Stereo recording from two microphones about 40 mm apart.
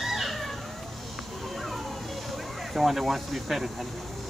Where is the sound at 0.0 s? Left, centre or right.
Centre.